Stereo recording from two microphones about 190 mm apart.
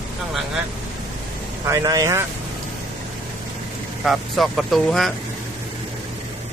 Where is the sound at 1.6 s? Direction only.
20° right (ahead or behind).